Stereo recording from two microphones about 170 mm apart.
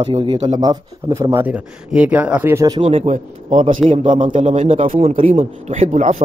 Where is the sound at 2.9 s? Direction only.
35° right (ahead or behind).